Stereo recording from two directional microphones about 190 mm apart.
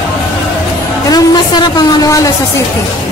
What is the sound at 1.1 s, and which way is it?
Speech, 20° left (ahead or behind).